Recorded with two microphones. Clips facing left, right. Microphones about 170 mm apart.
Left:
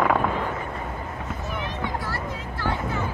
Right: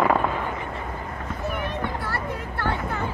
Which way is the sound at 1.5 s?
55° right (ahead or behind).